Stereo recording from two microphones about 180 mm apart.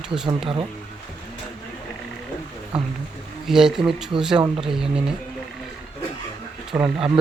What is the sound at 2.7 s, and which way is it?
Speech, 5° right (ahead or behind).